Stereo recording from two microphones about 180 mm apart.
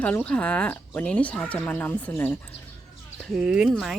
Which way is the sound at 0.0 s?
10° left (ahead or behind).